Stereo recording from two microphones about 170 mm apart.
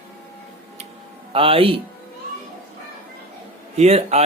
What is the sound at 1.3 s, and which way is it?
Speech, 35° right (ahead or behind).